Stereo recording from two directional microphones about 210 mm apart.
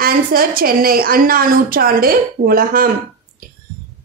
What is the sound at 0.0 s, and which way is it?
A child's voice, 45° right (ahead or behind).